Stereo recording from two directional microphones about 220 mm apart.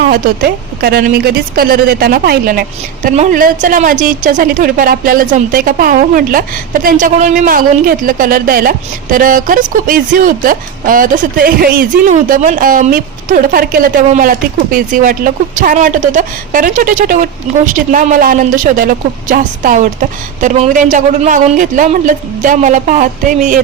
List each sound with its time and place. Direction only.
0.1 s a woman's voice: 45° right (ahead or behind)